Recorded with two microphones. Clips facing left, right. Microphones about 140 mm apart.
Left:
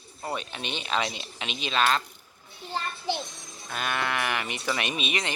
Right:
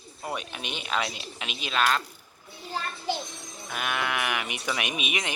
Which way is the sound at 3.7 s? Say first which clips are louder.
Even; 5° right (ahead or behind).